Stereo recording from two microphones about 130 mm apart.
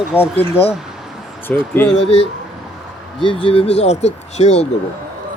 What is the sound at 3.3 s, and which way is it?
Speech, 45° left (ahead or behind).